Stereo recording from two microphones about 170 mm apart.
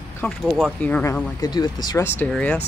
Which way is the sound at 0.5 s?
5° right (ahead or behind).